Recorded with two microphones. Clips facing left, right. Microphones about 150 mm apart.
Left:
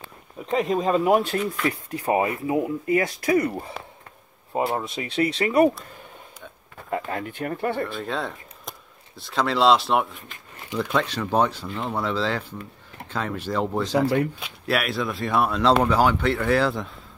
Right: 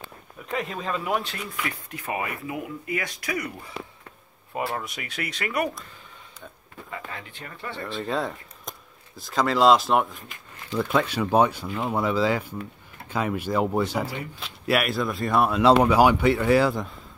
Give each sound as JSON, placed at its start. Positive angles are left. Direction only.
{"t": 0.5, "sound": "speech", "side_deg": 35}
{"t": 1.6, "sound": "speech", "side_deg": 30}
{"t": 4.6, "sound": "speech", "side_deg": 25}
{"t": 6.9, "sound": "speech", "side_deg": 50}
{"t": 7.9, "sound": "speech", "side_deg": 0}
{"t": 10.8, "sound": "speech", "side_deg": -10}
{"t": 13.8, "sound": "speech", "side_deg": 70}
{"t": 14.4, "sound": "speech", "side_deg": 0}